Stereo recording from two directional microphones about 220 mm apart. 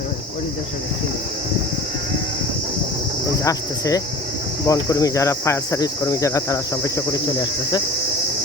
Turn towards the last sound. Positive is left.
turn(degrees=20)  # may be behind; listen again after turning